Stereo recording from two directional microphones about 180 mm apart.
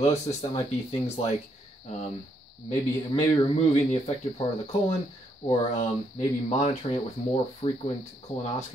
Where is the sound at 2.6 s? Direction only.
35° left (ahead or behind).